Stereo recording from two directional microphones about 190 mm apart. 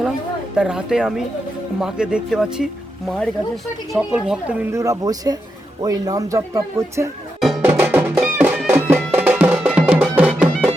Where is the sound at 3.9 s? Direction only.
5° right (ahead or behind).